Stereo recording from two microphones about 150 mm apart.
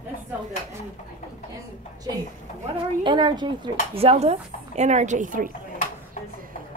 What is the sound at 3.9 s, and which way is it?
Speech, 45° right (ahead or behind).